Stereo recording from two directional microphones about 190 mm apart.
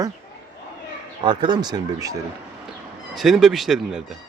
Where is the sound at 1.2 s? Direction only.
25° right (ahead or behind).